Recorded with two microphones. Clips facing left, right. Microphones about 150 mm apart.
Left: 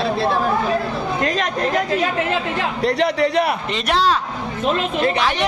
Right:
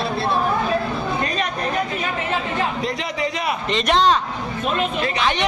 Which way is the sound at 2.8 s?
65° left (ahead or behind).